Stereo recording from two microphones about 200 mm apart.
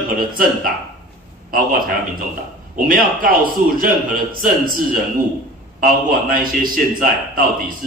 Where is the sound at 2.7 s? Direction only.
45° right (ahead or behind).